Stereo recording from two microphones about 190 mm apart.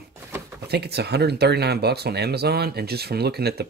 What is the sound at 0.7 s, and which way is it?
Speech, 60° right (ahead or behind).